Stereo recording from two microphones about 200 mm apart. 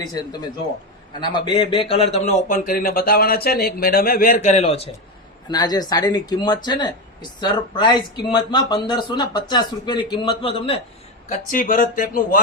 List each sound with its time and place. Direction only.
0.0 s speech: 20° left (ahead or behind)
5.5 s speech: 20° left (ahead or behind)
11.3 s speech: 40° left (ahead or behind)